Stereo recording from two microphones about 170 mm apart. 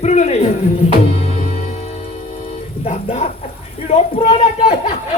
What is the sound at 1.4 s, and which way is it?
Music, 40° left (ahead or behind).